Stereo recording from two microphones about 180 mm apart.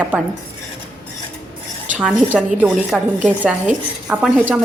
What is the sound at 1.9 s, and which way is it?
A woman's voice, 5° right (ahead or behind).